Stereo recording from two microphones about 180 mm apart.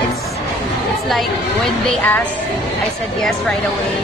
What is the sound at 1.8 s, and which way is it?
Speech, 10° left (ahead or behind).